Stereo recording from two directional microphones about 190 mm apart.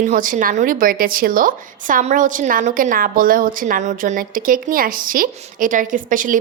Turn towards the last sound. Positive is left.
turn(degrees=-45)  # may be behind; listen again after turning